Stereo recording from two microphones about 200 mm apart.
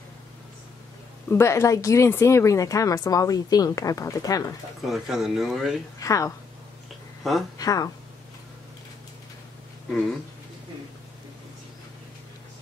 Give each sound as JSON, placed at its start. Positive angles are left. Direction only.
{"t": 1.3, "sound": "speech", "side_deg": 15}
{"t": 4.8, "sound": "speech", "side_deg": 0}
{"t": 5.9, "sound": "speech", "side_deg": 15}
{"t": 7.5, "sound": "speech", "side_deg": 20}